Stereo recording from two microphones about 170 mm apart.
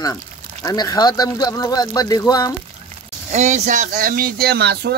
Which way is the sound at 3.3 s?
45° right (ahead or behind).